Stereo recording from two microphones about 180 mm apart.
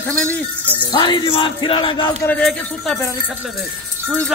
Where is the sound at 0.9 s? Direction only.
25° left (ahead or behind).